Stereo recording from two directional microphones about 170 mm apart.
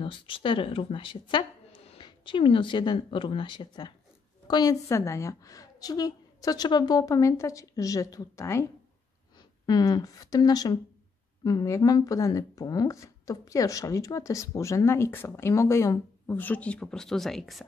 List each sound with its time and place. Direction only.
0.0 s a woman's voice: 30° left (ahead or behind)
9.7 s a woman's voice: 20° left (ahead or behind); by 17.6 s centre (ahead or behind)